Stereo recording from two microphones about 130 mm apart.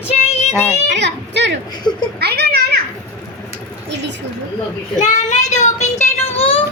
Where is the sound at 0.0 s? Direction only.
55° left (ahead or behind).